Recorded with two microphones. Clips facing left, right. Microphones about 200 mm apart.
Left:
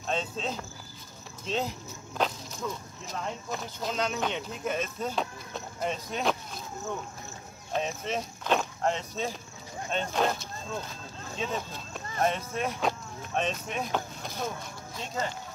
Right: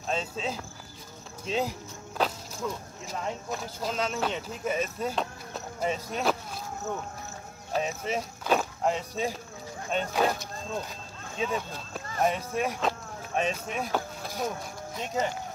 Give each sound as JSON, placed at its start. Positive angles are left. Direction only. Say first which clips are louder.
{"t": 0.0, "sound": "speech", "louder": "even", "side_deg": -5}
{"t": 7.7, "sound": "speech", "louder": "right 1 dB", "side_deg": -5}
{"t": 11.3, "sound": "speech", "louder": "right 3 dB", "side_deg": -5}